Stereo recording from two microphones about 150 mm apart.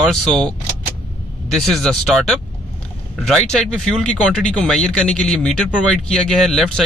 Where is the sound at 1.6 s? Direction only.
Centre (ahead or behind).